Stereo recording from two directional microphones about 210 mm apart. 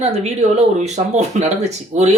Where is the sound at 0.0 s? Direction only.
30° right (ahead or behind).